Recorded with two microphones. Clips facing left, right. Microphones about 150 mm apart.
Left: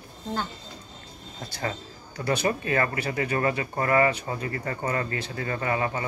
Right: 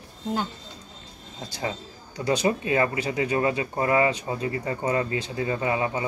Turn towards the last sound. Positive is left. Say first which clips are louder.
# right 2 dB
turn(degrees=-15)  # may be behind; listen again after turning